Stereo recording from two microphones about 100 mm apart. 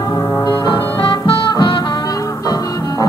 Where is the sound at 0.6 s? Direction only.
55° left (ahead or behind).